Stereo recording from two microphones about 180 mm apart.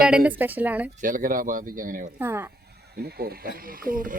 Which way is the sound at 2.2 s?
15° right (ahead or behind).